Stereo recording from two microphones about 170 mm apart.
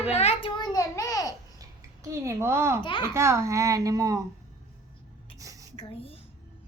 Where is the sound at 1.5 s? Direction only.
20° right (ahead or behind).